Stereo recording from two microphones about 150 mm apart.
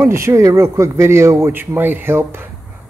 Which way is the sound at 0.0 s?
20° right (ahead or behind).